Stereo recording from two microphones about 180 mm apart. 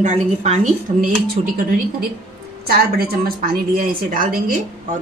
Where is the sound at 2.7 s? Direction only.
60° right (ahead or behind).